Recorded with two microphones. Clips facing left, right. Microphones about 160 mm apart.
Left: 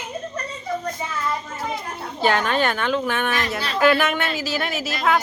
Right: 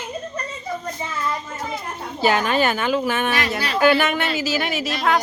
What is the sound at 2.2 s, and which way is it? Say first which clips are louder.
Speech: right 1 dB; 5° right (ahead or behind).